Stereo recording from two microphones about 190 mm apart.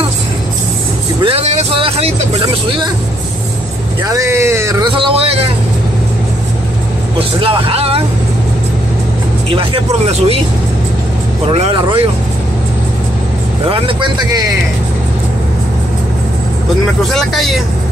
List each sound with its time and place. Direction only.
1.2 s vehicle: 30° right (ahead or behind)
2.4 s speech: 20° right (ahead or behind)
4.0 s speech: 15° right (ahead or behind)
4.9 s speech: 30° right (ahead or behind)
7.3 s speech: 30° right (ahead or behind)
9.5 s speech: 30° right (ahead or behind)
11.4 s speech: 30° right (ahead or behind)
13.7 s speech: 25° right (ahead or behind)
16.8 s speech: centre (ahead or behind)